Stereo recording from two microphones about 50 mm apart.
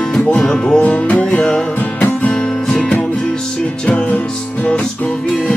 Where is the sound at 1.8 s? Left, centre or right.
Left.